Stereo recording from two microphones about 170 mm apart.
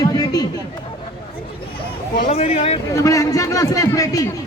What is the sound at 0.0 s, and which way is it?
Chatter, 20° left (ahead or behind).